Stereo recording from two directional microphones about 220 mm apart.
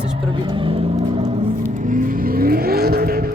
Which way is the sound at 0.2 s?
25° right (ahead or behind).